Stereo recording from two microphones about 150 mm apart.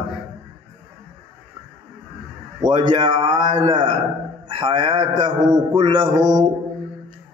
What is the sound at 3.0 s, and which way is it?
A man's voice, 35° right (ahead or behind).